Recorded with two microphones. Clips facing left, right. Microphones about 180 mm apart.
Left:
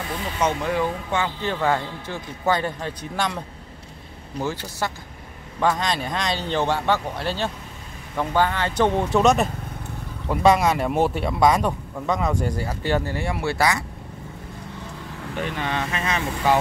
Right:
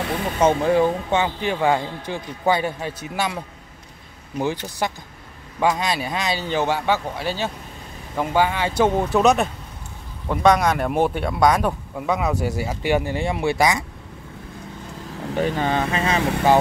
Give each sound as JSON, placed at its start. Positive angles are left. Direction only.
{"t": 0.4, "sound": "speech", "side_deg": -30}
{"t": 4.8, "sound": "speech", "side_deg": -15}
{"t": 15.3, "sound": "speech", "side_deg": -40}